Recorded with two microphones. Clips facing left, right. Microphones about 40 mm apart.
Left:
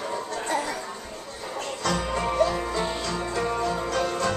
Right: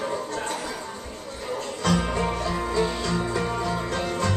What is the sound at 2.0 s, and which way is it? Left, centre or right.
Music, centre.